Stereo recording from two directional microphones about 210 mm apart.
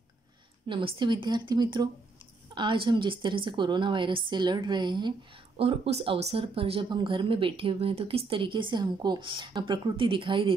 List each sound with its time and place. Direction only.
0.7 s speech: 25° right (ahead or behind)